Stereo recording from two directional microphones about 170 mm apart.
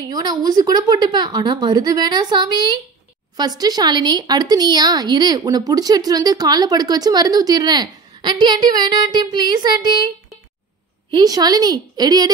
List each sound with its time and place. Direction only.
0.0 s speech: 25° right (ahead or behind)